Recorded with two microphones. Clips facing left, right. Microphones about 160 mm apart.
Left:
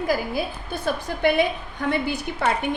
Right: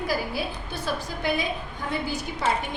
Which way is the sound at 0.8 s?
65° left (ahead or behind).